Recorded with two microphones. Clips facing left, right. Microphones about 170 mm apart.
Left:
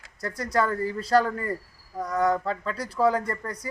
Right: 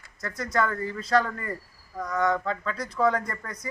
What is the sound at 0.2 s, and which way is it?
Speech, 35° left (ahead or behind).